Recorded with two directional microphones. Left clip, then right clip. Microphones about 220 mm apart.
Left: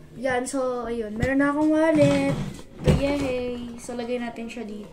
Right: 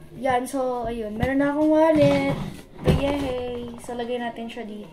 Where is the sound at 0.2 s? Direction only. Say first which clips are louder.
Right 2 dB; centre (ahead or behind).